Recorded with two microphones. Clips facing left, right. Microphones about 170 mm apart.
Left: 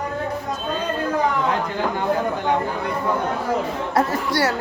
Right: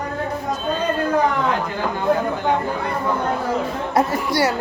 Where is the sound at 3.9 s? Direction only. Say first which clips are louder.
Right 2 dB; 10° right (ahead or behind).